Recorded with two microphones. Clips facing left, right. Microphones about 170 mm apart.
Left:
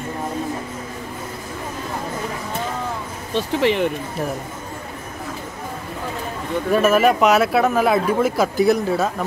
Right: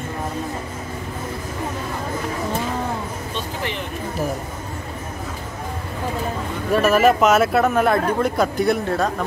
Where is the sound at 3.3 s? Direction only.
70° left (ahead or behind).